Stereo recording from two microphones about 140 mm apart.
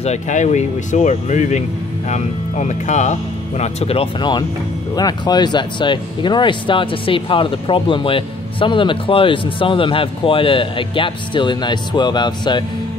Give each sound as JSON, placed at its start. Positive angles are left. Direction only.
{"t": 0.0, "sound": "speech", "side_deg": 55}